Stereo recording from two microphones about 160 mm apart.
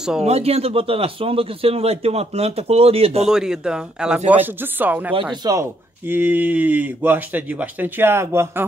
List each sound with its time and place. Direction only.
0.2 s a man's voice: 40° right (ahead or behind)
3.3 s speech: 5° right (ahead or behind)
5.3 s speech: 25° right (ahead or behind)